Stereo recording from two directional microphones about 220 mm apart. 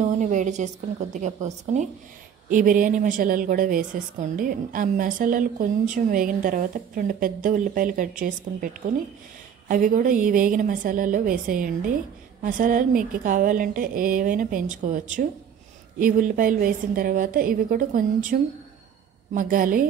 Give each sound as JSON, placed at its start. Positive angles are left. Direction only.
{"t": 0.0, "sound": "a woman's voice", "side_deg": -35}